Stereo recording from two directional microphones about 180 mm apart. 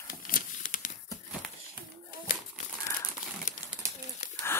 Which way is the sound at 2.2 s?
45° left (ahead or behind).